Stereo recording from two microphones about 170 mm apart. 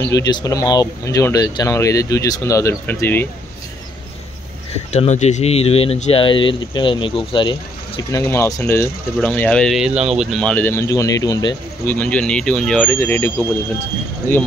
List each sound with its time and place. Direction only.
0.0 s speech: 20° left (ahead or behind)
4.9 s speech: 40° left (ahead or behind)
8.1 s speech: 15° left (ahead or behind)